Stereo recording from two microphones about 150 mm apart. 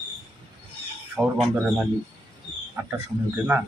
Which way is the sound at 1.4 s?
5° right (ahead or behind).